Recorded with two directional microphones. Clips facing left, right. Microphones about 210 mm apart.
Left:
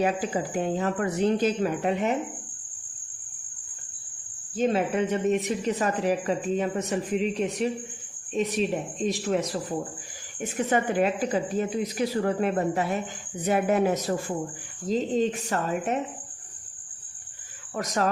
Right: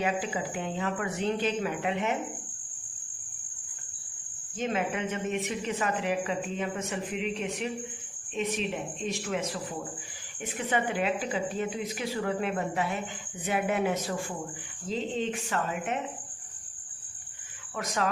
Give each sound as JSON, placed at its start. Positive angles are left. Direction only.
{"t": 0.0, "sound": "speech", "side_deg": 40}
{"t": 4.5, "sound": "speech", "side_deg": 35}
{"t": 10.7, "sound": "speech", "side_deg": 45}
{"t": 17.7, "sound": "speech", "side_deg": 40}